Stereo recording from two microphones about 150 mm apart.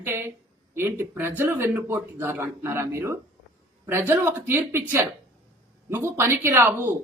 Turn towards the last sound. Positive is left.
turn(degrees=-15)  # may be behind; listen again after turning